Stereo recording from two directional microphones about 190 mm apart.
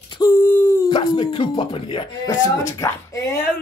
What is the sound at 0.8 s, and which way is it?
Speech, 25° left (ahead or behind).